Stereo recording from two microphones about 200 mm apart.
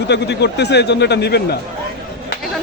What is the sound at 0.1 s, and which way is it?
A man's voice, 60° left (ahead or behind).